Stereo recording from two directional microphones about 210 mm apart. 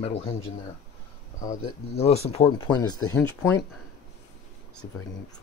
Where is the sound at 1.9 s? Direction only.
30° left (ahead or behind); by 3.6 s 10° left (ahead or behind).